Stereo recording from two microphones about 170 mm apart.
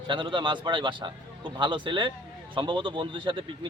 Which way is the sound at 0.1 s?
30° right (ahead or behind).